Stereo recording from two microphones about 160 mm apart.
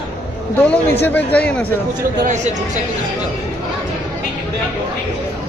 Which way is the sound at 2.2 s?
50° right (ahead or behind).